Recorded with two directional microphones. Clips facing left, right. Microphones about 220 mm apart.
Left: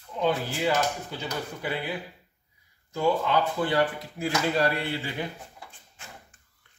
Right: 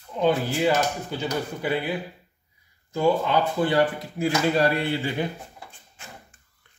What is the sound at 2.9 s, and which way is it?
Speech, 15° right (ahead or behind).